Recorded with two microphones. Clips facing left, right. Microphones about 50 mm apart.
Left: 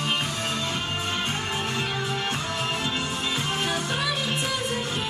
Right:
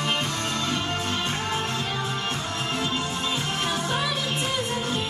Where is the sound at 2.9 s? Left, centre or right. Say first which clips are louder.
Even; left.